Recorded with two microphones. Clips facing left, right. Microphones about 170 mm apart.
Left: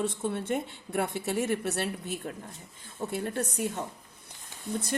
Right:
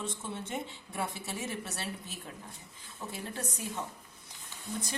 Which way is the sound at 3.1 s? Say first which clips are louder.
Left 9 dB; 60° left (ahead or behind).